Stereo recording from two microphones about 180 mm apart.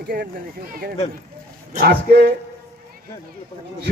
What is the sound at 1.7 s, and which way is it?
Speech, 55° right (ahead or behind).